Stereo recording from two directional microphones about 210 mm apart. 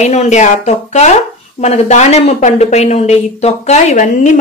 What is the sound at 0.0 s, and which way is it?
Speech, 35° left (ahead or behind).